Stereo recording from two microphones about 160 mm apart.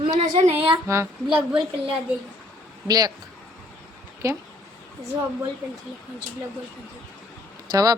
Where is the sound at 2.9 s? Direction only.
25° right (ahead or behind).